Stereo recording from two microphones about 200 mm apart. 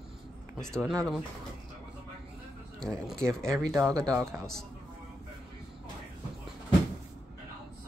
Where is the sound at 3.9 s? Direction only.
15° right (ahead or behind).